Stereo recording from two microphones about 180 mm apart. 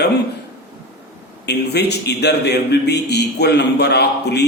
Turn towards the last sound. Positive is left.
turn(degrees=65)  # may be behind; listen again after turning